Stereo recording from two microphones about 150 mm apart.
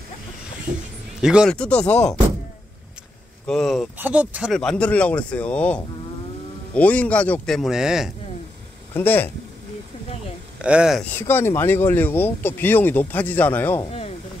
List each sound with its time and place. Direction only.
1.2 s speech: 5° right (ahead or behind)
3.4 s speech: centre (ahead or behind)
4.0 s speech: 10° right (ahead or behind)
4.6 s speech: 5° left (ahead or behind)
8.9 s speech: 15° left (ahead or behind)
10.6 s speech: 5° right (ahead or behind)
11.1 s speech: 15° left (ahead or behind)